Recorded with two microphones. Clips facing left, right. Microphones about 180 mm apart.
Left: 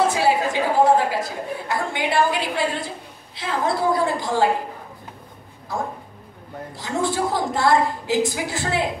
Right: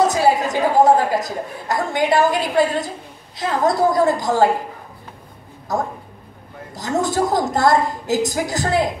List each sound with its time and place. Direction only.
0.0 s speech: 40° right (ahead or behind)
5.7 s a woman's voice: 45° right (ahead or behind)